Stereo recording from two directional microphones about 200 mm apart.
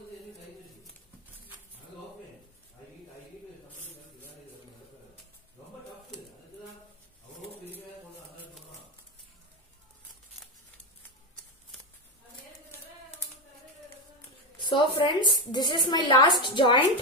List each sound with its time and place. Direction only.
14.6 s a woman's voice: 25° left (ahead or behind)